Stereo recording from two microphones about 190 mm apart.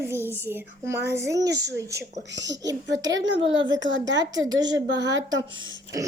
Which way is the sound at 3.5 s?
75° right (ahead or behind).